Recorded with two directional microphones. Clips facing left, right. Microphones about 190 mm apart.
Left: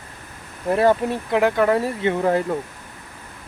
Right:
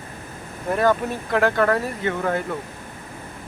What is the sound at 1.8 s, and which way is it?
Speech, 30° left (ahead or behind).